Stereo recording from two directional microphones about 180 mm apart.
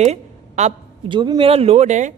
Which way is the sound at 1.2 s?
25° right (ahead or behind).